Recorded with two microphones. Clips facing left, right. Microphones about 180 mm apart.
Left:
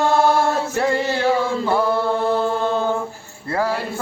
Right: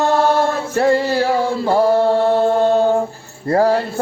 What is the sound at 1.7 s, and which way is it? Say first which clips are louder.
Chant: right 8 dB; 40° right (ahead or behind).